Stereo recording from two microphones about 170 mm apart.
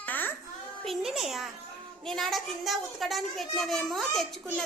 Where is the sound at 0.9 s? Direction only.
Centre (ahead or behind).